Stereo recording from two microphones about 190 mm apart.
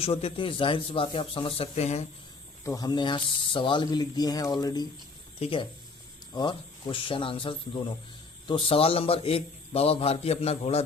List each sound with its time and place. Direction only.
0.0 s speech: 30° left (ahead or behind)
2.6 s a man's voice: 20° left (ahead or behind)